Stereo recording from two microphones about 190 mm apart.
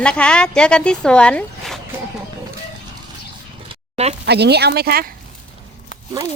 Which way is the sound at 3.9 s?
35° right (ahead or behind).